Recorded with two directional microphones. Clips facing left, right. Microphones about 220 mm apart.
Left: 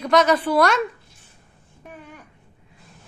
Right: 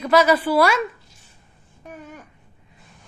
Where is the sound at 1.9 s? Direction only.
45° right (ahead or behind).